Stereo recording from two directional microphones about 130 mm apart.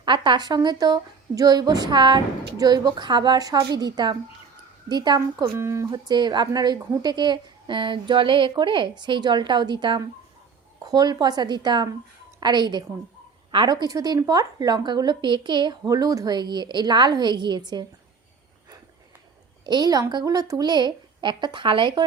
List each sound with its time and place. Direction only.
0.0 s a woman's voice: 35° right (ahead or behind)
5.5 s a woman's voice: 20° right (ahead or behind)
19.6 s a woman's voice: 35° right (ahead or behind)